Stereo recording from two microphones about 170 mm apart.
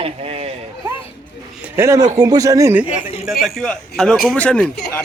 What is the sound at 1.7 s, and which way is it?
Speech, 15° right (ahead or behind).